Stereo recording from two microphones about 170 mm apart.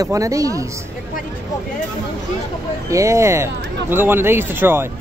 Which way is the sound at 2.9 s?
15° right (ahead or behind).